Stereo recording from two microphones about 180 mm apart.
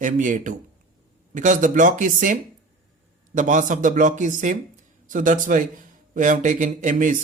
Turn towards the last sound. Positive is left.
turn(degrees=-45)  # may be behind; listen again after turning